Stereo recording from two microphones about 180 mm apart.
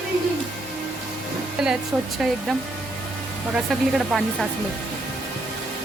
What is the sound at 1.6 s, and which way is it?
A woman's voice, 5° right (ahead or behind).